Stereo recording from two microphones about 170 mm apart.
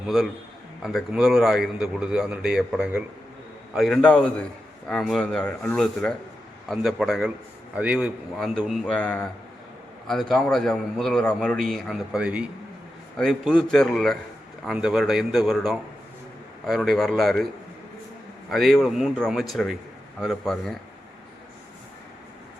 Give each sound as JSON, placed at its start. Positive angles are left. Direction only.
{"t": 0.8, "sound": "a man's voice", "side_deg": -5}
{"t": 13.1, "sound": "a man's voice", "side_deg": 5}
{"t": 18.5, "sound": "a man's voice", "side_deg": 0}